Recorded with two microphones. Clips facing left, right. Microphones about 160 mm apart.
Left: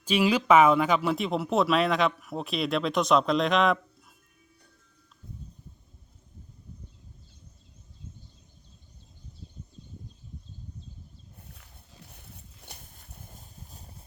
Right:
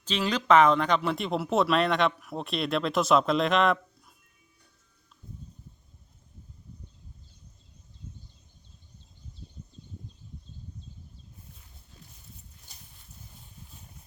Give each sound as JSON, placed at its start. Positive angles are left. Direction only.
{"t": 0.0, "sound": "speech", "side_deg": 10}
{"t": 12.1, "sound": "clip-clop", "side_deg": 65}
{"t": 13.4, "sound": "clip-clop", "side_deg": 40}